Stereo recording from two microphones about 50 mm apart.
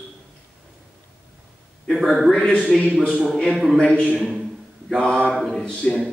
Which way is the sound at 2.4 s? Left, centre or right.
Left.